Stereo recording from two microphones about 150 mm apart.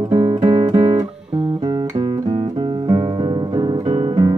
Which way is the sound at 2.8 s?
25° right (ahead or behind).